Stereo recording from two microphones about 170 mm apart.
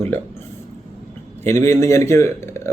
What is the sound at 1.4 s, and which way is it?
Speech, 15° left (ahead or behind).